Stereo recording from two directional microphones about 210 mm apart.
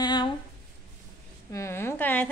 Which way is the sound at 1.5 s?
15° left (ahead or behind).